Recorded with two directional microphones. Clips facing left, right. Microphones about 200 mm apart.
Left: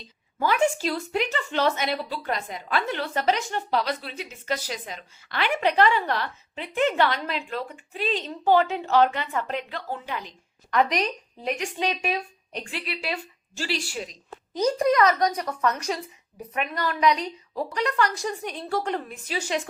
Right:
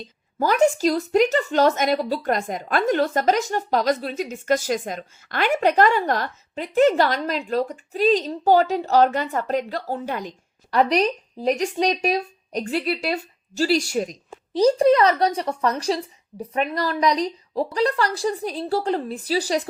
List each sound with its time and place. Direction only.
0.3 s a woman's voice: 40° right (ahead or behind)
14.5 s a woman's voice: 30° right (ahead or behind)